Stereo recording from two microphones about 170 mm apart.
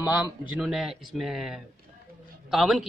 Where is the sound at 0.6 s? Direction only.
Centre (ahead or behind).